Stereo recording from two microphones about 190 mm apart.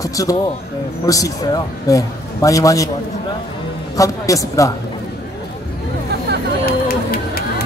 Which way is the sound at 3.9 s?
15° left (ahead or behind).